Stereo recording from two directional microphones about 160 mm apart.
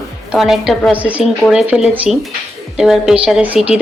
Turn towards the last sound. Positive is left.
turn(degrees=-5)  # may be behind; listen again after turning